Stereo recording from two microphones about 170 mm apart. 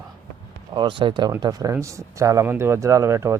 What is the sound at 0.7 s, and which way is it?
Speech, 25° right (ahead or behind).